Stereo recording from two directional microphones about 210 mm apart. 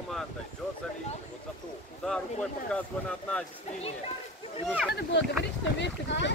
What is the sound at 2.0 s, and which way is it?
Speech, 5° left (ahead or behind).